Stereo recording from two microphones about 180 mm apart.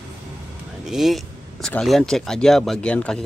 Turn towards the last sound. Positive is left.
turn(degrees=5)  # may be behind; listen again after turning